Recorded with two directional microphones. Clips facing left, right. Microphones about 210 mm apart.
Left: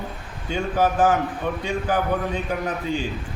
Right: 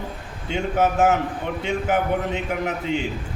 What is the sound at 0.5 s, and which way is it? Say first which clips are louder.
A man's voice: right 1 dB; 25° right (ahead or behind).